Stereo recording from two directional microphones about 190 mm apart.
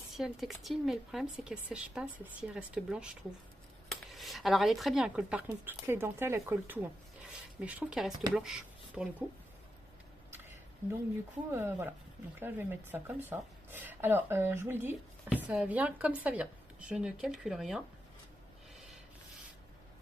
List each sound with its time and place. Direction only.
0.1 s speech: centre (ahead or behind)
11.5 s speech: 10° right (ahead or behind)